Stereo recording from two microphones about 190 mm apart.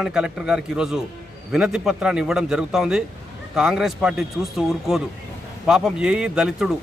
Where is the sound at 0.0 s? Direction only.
5° right (ahead or behind).